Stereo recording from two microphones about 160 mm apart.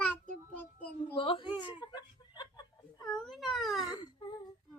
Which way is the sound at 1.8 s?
30° left (ahead or behind).